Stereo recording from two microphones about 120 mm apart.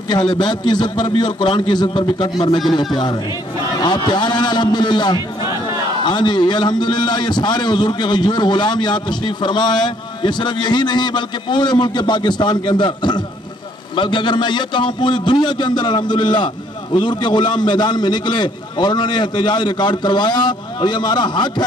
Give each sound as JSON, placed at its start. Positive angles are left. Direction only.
{"t": 0.1, "sound": "a man's voice", "side_deg": 35}